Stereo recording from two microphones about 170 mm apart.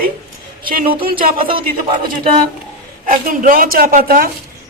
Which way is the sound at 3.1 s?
50° right (ahead or behind).